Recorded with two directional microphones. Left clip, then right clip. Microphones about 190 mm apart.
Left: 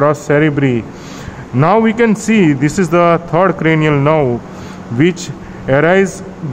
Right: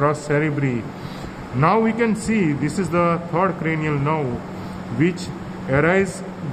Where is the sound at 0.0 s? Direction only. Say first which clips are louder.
Left 8 dB; 50° left (ahead or behind).